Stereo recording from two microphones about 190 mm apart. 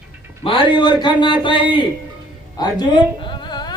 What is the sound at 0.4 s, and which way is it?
Speech, 30° left (ahead or behind).